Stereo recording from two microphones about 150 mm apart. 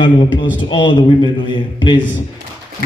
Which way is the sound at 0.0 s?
30° left (ahead or behind).